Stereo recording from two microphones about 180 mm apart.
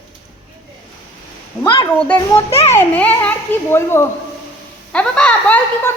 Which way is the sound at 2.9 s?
10° left (ahead or behind).